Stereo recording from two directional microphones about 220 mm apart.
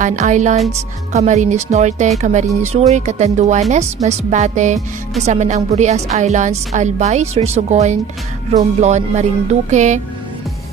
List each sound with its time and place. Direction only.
0.0 s a woman's voice: 35° right (ahead or behind)